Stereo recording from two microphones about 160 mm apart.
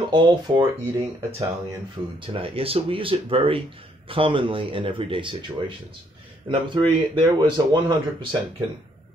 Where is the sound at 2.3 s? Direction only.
35° right (ahead or behind).